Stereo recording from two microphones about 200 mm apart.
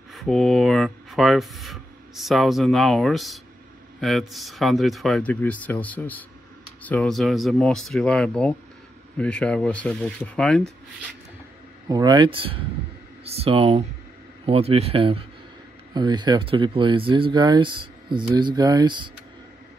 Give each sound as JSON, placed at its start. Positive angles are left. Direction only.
{"t": 0.1, "sound": "speech", "side_deg": 0}
{"t": 11.9, "sound": "speech", "side_deg": -20}